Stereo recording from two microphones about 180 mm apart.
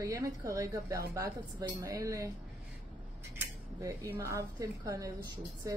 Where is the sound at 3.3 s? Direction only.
15° right (ahead or behind).